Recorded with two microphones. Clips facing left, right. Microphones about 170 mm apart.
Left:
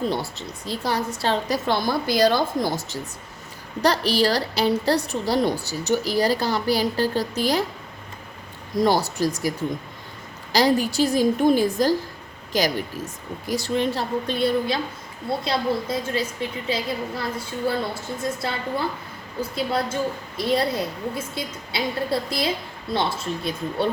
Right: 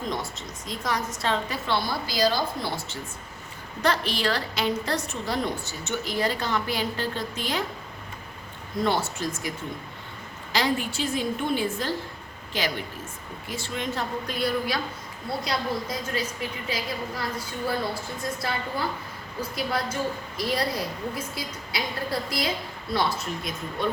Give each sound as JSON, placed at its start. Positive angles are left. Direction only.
{"t": 0.0, "sound": "a woman's voice", "side_deg": 35}
{"t": 8.7, "sound": "a woman's voice", "side_deg": 35}
{"t": 10.5, "sound": "a woman's voice", "side_deg": 35}